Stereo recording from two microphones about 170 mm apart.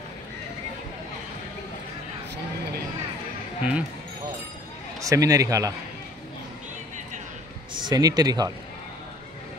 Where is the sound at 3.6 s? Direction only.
10° right (ahead or behind).